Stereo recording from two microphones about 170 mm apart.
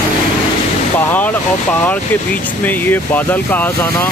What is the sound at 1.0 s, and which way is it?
Speech, 10° left (ahead or behind).